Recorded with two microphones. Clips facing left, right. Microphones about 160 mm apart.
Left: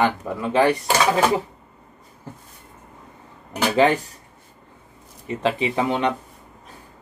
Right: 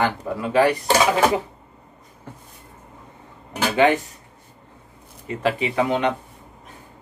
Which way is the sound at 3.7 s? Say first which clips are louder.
Even; 30° left (ahead or behind).